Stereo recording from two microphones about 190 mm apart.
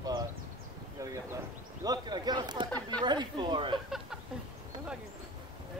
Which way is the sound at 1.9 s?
20° right (ahead or behind).